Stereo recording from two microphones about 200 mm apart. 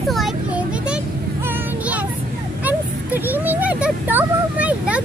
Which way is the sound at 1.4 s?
10° right (ahead or behind).